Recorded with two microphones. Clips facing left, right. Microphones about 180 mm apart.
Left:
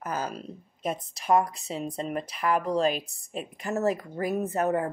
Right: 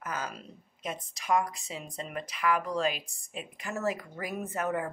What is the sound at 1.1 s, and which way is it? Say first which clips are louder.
Speech: left 4 dB; 35° left (ahead or behind).